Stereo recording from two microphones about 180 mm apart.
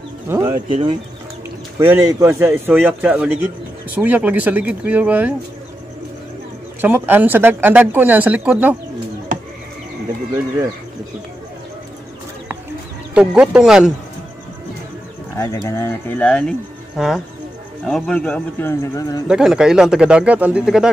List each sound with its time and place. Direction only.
0.3 s speech: 15° right (ahead or behind)
1.8 s speech: 15° right (ahead or behind)
6.8 s speech: 10° right (ahead or behind)
13.1 s speech: 5° right (ahead or behind)
15.3 s speech: 20° left (ahead or behind)
19.2 s speech: 5° right (ahead or behind)